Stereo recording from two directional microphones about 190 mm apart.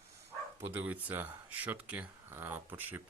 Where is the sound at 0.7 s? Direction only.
10° right (ahead or behind).